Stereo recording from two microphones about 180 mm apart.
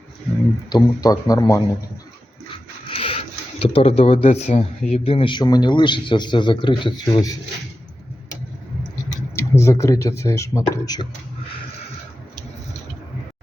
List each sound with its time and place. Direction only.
0.7 s speech: 20° left (ahead or behind)
2.9 s speech: 30° left (ahead or behind)
9.3 s speech: 15° left (ahead or behind)